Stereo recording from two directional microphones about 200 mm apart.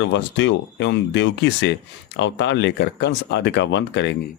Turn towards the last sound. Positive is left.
turn(degrees=60)  # may be behind; listen again after turning